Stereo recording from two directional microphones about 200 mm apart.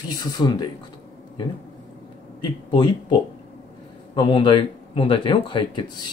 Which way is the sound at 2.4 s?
25° left (ahead or behind).